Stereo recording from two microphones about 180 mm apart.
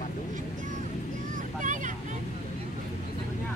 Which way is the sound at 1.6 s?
45° right (ahead or behind).